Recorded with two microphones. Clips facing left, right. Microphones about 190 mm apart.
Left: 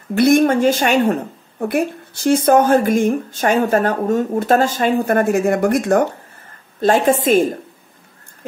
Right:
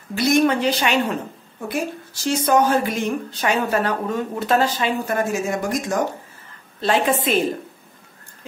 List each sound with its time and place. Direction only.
0.1 s a woman's voice: 55° left (ahead or behind)
6.8 s a woman's voice: 45° left (ahead or behind)